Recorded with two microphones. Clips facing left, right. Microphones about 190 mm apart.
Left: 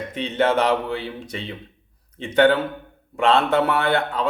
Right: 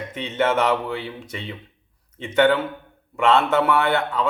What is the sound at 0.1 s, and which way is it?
Speech, 35° left (ahead or behind).